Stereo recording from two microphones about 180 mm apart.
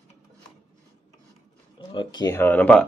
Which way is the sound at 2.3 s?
10° left (ahead or behind).